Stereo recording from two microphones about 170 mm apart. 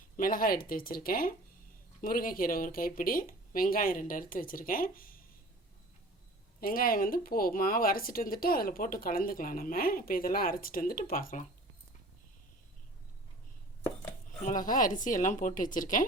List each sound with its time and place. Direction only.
0.2 s speech: 55° left (ahead or behind)
6.6 s speech: 60° left (ahead or behind)
14.3 s speech: 50° left (ahead or behind)